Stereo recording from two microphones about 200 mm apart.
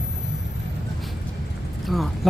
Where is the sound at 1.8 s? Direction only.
Centre (ahead or behind).